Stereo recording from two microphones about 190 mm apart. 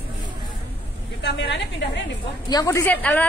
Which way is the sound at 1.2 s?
70° left (ahead or behind).